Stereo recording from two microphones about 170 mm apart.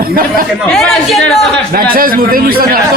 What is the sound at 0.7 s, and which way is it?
Speech, centre (ahead or behind).